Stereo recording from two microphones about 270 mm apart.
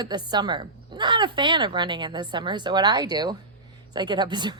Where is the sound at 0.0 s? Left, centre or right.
Centre.